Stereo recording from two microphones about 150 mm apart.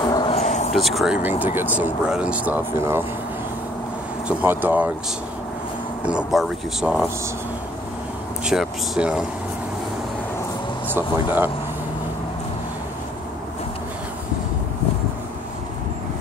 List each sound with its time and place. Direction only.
0.0 s a sound: 30° left (ahead or behind)
0.4 s a sound: 50° left (ahead or behind)
0.7 s speech: centre (ahead or behind); by 3.1 s 15° right (ahead or behind)
4.3 s speech: 10° right (ahead or behind)
6.0 s speech: 5° right (ahead or behind)
8.5 s speech: 5° right (ahead or behind)
10.9 s speech: 15° right (ahead or behind)